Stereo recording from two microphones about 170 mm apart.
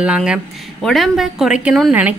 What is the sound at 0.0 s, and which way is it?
A woman's voice, 5° right (ahead or behind).